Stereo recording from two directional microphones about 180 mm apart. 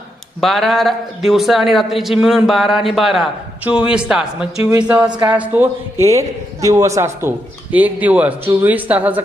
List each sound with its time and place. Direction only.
0.4 s a man's voice: centre (ahead or behind)
5.0 s a man's voice: 25° right (ahead or behind)
5.3 s a man's voice: 10° right (ahead or behind)